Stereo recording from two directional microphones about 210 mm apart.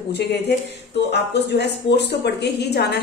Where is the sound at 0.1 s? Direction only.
55° left (ahead or behind).